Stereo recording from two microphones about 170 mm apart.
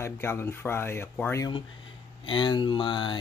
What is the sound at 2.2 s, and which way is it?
Speech, 25° left (ahead or behind).